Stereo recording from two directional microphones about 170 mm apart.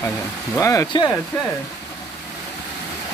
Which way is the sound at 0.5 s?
20° left (ahead or behind).